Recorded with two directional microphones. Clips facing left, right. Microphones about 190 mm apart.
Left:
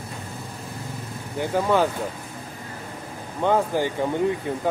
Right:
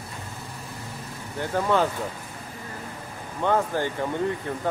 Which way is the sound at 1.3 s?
10° left (ahead or behind).